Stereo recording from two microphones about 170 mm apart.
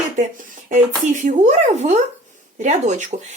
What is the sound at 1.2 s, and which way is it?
A woman's voice, 45° right (ahead or behind).